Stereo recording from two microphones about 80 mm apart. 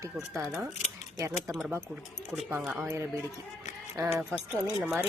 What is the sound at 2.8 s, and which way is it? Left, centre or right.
Speech, right.